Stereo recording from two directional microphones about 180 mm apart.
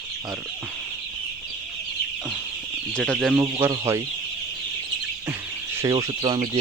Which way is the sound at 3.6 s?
15° right (ahead or behind).